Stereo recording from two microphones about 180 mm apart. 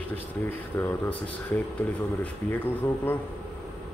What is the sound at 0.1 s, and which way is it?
Speech, 15° left (ahead or behind).